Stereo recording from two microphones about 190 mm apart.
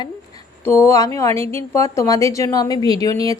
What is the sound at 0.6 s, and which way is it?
A woman's voice, 15° left (ahead or behind).